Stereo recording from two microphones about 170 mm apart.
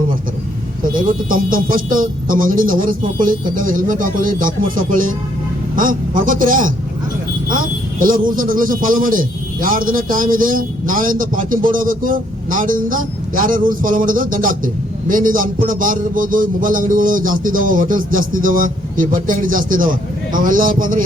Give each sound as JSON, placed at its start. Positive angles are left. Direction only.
{"t": 0.9, "sound": "speech", "side_deg": -55}